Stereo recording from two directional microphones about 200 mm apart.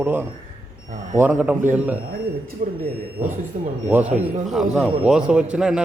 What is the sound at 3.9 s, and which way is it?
A man's voice, 5° right (ahead or behind).